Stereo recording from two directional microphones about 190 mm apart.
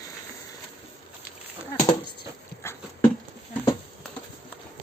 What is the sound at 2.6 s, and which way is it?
Dog, 15° left (ahead or behind).